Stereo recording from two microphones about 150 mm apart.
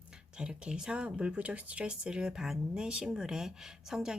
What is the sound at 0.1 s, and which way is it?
Speech, 5° right (ahead or behind).